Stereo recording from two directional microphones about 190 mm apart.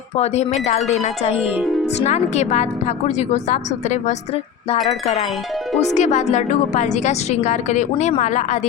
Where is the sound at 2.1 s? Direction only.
35° left (ahead or behind).